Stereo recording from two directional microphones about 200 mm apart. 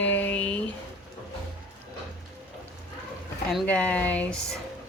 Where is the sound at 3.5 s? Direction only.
5° left (ahead or behind).